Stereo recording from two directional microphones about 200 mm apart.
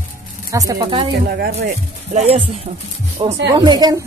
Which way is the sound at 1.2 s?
50° right (ahead or behind).